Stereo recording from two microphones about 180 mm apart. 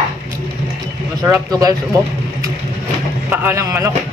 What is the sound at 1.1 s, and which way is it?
Speech, 20° right (ahead or behind).